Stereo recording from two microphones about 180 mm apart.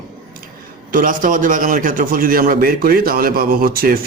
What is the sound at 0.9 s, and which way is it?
A man's voice, 50° right (ahead or behind).